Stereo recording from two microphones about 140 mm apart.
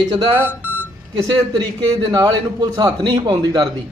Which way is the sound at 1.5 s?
30° right (ahead or behind).